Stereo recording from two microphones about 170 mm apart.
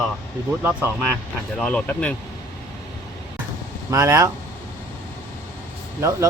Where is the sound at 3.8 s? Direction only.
20° right (ahead or behind).